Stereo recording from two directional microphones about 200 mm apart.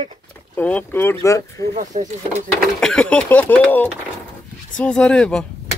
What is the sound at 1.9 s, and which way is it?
Speech, 40° right (ahead or behind).